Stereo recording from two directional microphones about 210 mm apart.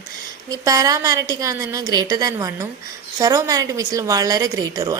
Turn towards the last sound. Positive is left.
turn(degrees=-15)  # may be behind; listen again after turning